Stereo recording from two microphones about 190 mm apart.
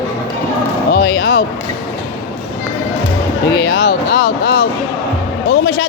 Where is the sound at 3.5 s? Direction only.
70° left (ahead or behind).